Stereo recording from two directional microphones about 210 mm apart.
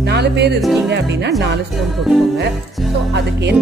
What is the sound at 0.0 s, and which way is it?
Speech, 55° right (ahead or behind).